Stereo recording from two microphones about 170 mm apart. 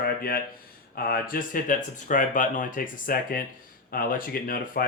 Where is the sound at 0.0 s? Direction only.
60° left (ahead or behind).